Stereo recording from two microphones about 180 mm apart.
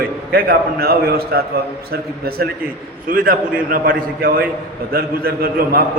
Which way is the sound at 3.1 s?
50° right (ahead or behind).